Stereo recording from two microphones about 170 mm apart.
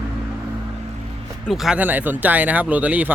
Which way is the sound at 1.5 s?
5° right (ahead or behind).